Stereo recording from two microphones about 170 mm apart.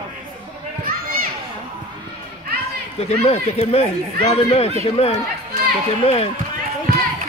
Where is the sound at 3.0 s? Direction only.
40° left (ahead or behind).